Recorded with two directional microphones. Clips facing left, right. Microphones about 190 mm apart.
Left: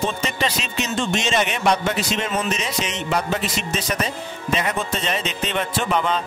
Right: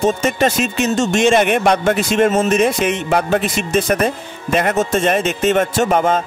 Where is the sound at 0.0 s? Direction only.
45° right (ahead or behind).